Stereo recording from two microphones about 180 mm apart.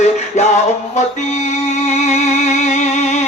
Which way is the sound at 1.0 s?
40° left (ahead or behind).